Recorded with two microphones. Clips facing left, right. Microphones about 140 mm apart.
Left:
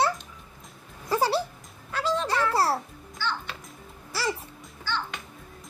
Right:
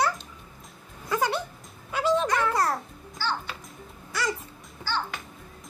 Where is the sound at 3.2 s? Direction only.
35° right (ahead or behind).